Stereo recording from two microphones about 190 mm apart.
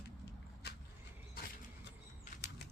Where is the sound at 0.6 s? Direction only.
60° left (ahead or behind).